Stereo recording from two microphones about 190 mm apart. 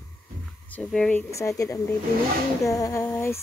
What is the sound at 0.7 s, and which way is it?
Speech, 5° left (ahead or behind).